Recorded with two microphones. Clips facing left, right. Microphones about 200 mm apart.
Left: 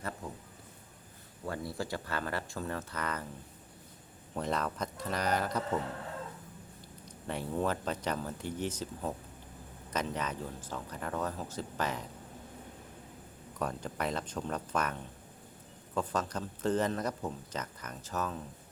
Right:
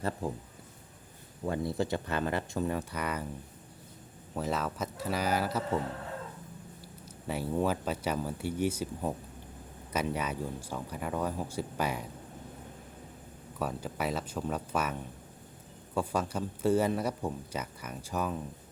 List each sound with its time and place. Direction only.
1.5 s speech: 20° right (ahead or behind)
4.4 s speech: 5° right (ahead or behind)
7.0 s speech: 5° right (ahead or behind)
13.6 s speech: 5° right (ahead or behind)